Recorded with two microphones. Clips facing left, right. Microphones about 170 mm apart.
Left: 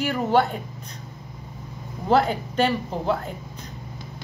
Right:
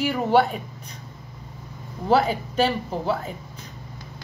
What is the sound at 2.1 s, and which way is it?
A woman's voice, 5° right (ahead or behind).